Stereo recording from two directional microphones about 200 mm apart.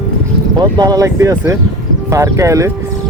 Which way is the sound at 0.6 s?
20° right (ahead or behind).